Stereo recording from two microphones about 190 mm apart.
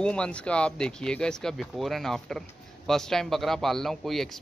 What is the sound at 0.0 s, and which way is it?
Speech, 5° left (ahead or behind).